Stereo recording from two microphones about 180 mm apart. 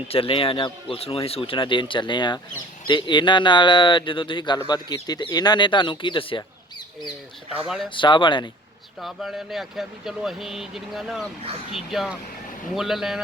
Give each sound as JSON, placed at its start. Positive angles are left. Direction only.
{"t": 0.1, "sound": "speech", "side_deg": 30}
{"t": 7.9, "sound": "speech", "side_deg": 25}
{"t": 9.0, "sound": "speech", "side_deg": 0}